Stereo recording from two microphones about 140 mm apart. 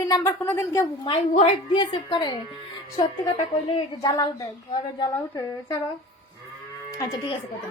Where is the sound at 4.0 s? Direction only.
30° left (ahead or behind).